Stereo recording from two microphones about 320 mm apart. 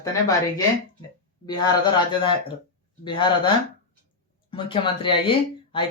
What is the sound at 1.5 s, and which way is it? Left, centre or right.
Speech, centre.